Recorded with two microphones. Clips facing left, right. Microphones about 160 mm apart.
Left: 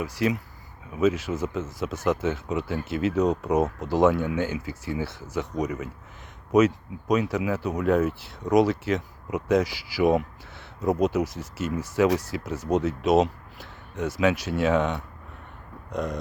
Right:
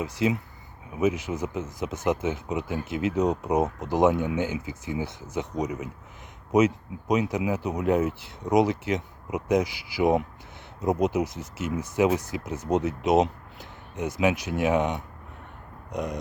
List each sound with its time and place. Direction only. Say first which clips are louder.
0.0 s speech: even; 20° right (ahead or behind)